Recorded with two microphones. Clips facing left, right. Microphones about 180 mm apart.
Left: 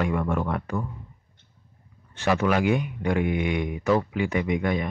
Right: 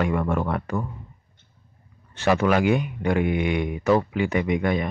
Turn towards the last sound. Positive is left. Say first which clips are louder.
# right 2 dB
turn(degrees=-65)  # may be behind; listen again after turning